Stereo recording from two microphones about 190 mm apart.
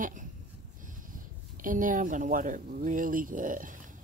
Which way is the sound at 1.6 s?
45° right (ahead or behind).